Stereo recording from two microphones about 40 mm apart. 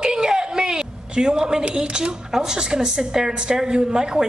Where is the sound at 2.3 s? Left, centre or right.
Centre.